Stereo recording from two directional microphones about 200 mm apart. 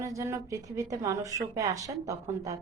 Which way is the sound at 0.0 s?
15° right (ahead or behind).